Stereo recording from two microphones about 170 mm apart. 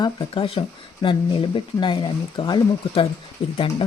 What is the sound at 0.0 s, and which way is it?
Speech, 30° left (ahead or behind).